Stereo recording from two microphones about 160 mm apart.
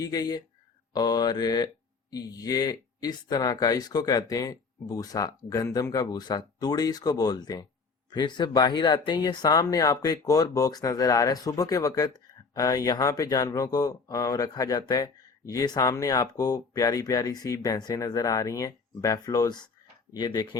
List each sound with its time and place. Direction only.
0.0 s speech: 25° left (ahead or behind)